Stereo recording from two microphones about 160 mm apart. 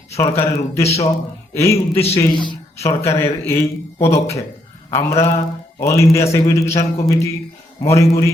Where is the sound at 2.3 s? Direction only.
30° left (ahead or behind).